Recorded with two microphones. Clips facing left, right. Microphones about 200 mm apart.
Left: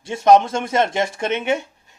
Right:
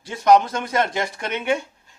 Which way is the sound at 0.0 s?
25° left (ahead or behind).